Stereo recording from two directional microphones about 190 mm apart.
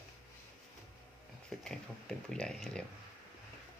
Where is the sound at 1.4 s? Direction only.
5° left (ahead or behind).